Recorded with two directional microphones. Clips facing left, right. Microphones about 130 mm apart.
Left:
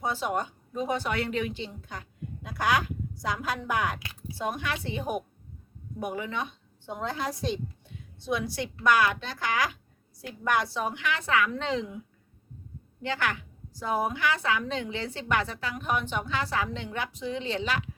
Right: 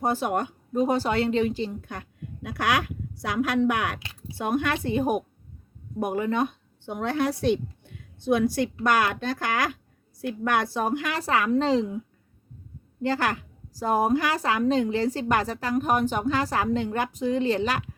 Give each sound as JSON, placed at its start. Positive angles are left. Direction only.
{"t": 0.0, "sound": "speech", "side_deg": -50}
{"t": 0.9, "sound": "a woman's voice", "side_deg": -35}
{"t": 1.9, "sound": "a woman's voice", "side_deg": -60}
{"t": 13.0, "sound": "a woman's voice", "side_deg": -40}